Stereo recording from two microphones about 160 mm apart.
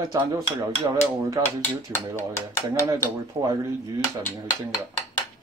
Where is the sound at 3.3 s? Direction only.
20° right (ahead or behind).